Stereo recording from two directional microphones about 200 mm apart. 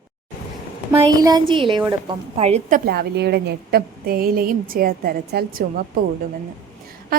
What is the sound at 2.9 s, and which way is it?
A woman's voice, 55° right (ahead or behind).